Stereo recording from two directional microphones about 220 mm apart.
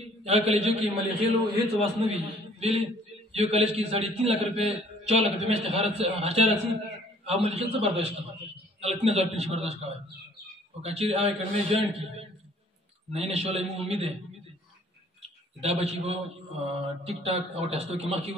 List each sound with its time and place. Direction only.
0.2 s a man's voice: 30° right (ahead or behind)
15.6 s a man's voice: 30° right (ahead or behind)